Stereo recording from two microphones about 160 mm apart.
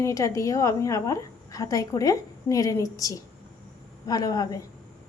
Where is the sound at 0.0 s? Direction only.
20° left (ahead or behind).